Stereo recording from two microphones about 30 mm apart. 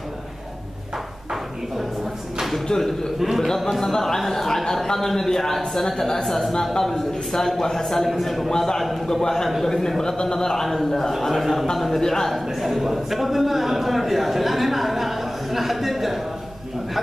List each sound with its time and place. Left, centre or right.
2.7 s a man's voice: left
3.3 s a man's voice: centre
6.2 s a man's voice: centre
8.1 s a man's voice: centre
8.5 s a man's voice: centre
10.7 s a man's voice: centre
12.5 s a man's voice: centre